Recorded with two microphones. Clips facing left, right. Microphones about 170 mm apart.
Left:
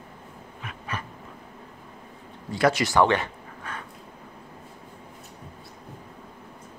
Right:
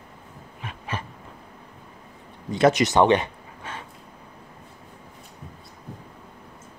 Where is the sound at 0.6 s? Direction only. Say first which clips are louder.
Right 2 dB; 30° right (ahead or behind).